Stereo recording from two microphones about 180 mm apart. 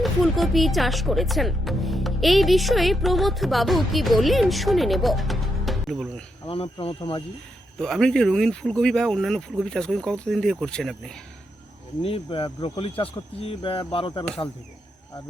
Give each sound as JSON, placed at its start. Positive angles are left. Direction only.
{"t": 0.0, "sound": "speech", "side_deg": 0}
{"t": 6.4, "sound": "speech", "side_deg": 30}
{"t": 7.8, "sound": "speech", "side_deg": 5}
{"t": 12.0, "sound": "speech", "side_deg": 30}